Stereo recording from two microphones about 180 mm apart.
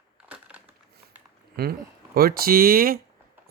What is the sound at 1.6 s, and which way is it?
Speech, 60° right (ahead or behind).